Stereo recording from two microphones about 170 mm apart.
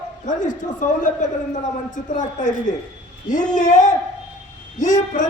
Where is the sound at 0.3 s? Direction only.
50° left (ahead or behind).